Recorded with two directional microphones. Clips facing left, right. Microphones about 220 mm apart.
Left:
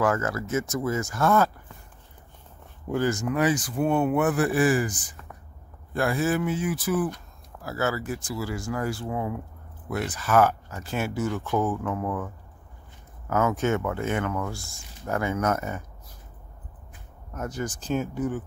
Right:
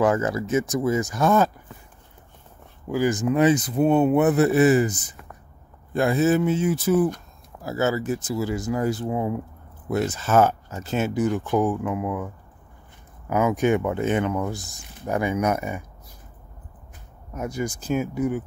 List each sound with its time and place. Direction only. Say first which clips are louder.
0.0 s speech: right 4 dB; 20° right (ahead or behind)
3.0 s speech: right 5 dB; 20° right (ahead or behind)
13.3 s speech: right 4 dB; 15° right (ahead or behind)
17.3 s speech: right 3 dB; 10° right (ahead or behind)